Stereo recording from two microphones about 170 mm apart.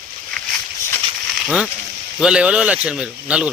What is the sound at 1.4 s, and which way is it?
A man's voice, centre (ahead or behind).